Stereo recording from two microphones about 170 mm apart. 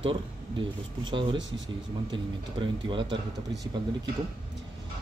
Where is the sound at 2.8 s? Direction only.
30° right (ahead or behind).